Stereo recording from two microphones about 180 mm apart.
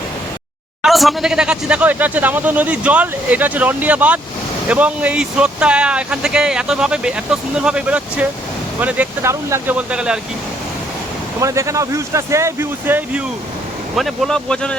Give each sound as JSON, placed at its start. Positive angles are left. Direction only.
{"t": 0.9, "sound": "speech", "side_deg": 0}
{"t": 11.3, "sound": "speech", "side_deg": -15}
{"t": 13.9, "sound": "speech", "side_deg": 0}